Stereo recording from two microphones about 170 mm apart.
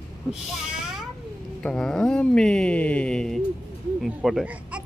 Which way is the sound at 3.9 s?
Centre (ahead or behind).